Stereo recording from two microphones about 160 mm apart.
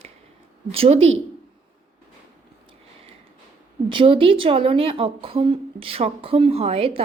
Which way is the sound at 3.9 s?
35° right (ahead or behind).